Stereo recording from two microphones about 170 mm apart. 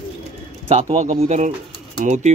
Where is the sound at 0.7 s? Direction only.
40° right (ahead or behind).